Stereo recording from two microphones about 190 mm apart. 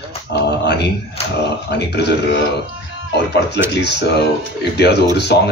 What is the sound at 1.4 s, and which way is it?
Speech, 60° left (ahead or behind).